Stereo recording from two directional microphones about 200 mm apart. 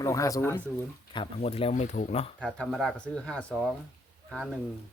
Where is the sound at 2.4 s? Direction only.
5° left (ahead or behind).